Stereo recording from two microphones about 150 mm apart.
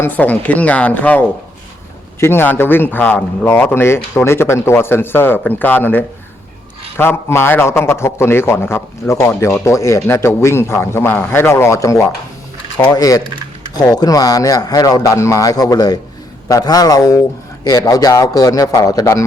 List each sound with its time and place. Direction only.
0.0 s a man's voice: 10° left (ahead or behind)
2.2 s a man's voice: 15° left (ahead or behind)